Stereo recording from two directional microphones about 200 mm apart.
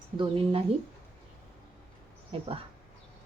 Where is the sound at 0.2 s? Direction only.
25° right (ahead or behind).